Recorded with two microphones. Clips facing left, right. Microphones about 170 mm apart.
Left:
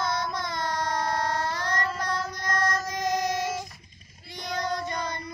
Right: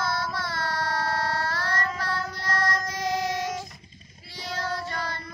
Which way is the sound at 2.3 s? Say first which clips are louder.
Even; 20° left (ahead or behind).